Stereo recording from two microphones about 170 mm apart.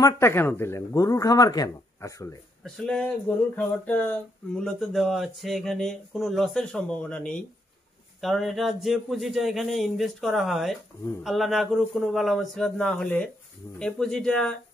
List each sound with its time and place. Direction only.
0.0 s speech: 15° left (ahead or behind)
2.6 s speech: 5° left (ahead or behind)